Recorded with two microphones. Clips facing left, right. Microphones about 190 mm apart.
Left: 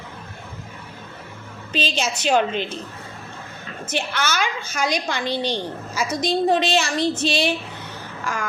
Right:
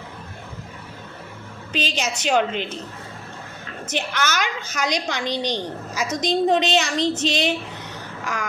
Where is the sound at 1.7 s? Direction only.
15° right (ahead or behind).